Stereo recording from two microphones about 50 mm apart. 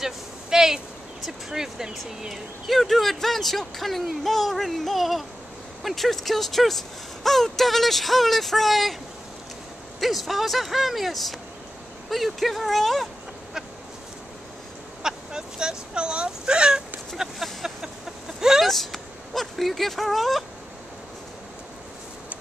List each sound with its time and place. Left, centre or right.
0.0 s a sound: centre
1.2 s speech: centre
9.9 s speech: centre
15.0 s speech: centre
17.4 s a sound: centre
18.4 s vehicle: centre
18.7 s speech: centre